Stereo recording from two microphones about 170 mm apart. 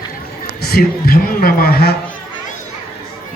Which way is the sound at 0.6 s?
65° left (ahead or behind).